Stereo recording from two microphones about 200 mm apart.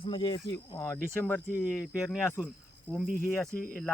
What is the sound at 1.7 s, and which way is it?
Speech, 5° right (ahead or behind).